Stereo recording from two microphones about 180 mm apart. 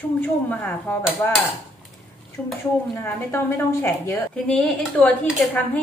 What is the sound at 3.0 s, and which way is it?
A woman's voice, 15° left (ahead or behind).